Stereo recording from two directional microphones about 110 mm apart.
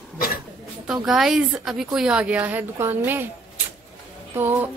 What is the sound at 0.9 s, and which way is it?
A woman's voice, 5° right (ahead or behind).